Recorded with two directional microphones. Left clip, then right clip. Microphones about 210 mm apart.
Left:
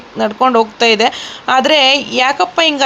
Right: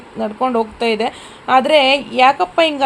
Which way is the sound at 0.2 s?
15° left (ahead or behind).